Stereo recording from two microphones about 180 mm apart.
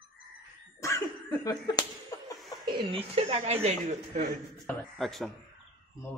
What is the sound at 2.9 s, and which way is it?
Speech, 30° right (ahead or behind).